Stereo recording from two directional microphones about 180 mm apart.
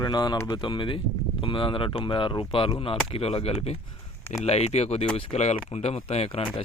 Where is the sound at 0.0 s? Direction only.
20° left (ahead or behind).